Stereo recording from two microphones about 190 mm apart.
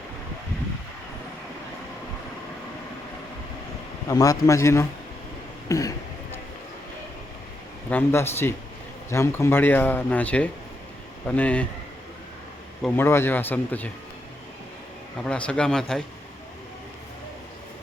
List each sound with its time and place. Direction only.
4.1 s speech: 20° left (ahead or behind)
7.9 s speech: 10° left (ahead or behind)
13.0 s speech: 10° left (ahead or behind)
15.2 s speech: 5° left (ahead or behind)